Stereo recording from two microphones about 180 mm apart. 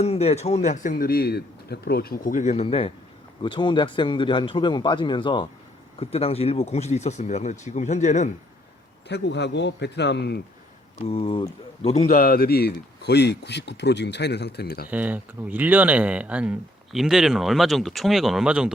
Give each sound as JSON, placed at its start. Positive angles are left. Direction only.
{"t": 0.0, "sound": "a man's voice", "side_deg": 35}
{"t": 9.0, "sound": "speech", "side_deg": 70}
{"t": 11.1, "sound": "speech", "side_deg": 30}
{"t": 12.0, "sound": "speech", "side_deg": 50}
{"t": 14.8, "sound": "speech", "side_deg": -10}